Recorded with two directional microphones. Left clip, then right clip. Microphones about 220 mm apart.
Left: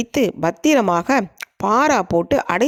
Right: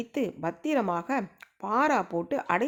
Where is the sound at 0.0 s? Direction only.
45° left (ahead or behind).